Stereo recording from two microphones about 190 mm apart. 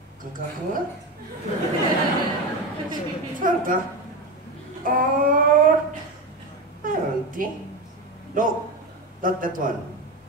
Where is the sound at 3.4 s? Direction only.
45° right (ahead or behind).